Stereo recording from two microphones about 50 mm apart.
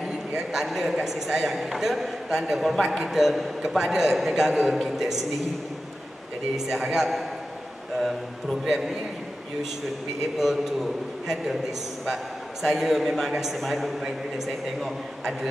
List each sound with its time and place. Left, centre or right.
0.0 s a man's voice: centre
6.5 s a man's voice: centre
10.4 s a man's voice: centre
12.6 s a man's voice: centre